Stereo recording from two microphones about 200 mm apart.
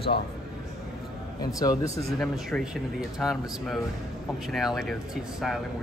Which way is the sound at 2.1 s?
Centre (ahead or behind).